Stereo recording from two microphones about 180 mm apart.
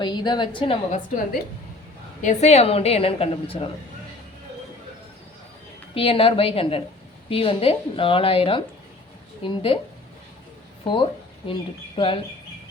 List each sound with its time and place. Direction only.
0.0 s a woman's voice: 25° left (ahead or behind)
2.2 s a woman's voice: 40° left (ahead or behind)
5.9 s a woman's voice: 30° left (ahead or behind)
10.8 s a woman's voice: 25° left (ahead or behind)